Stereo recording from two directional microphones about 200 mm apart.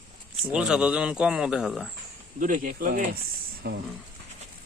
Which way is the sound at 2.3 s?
40° right (ahead or behind).